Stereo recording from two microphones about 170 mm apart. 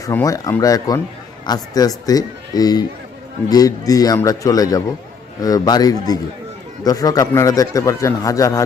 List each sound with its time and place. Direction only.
0.0 s a man's voice: 20° left (ahead or behind)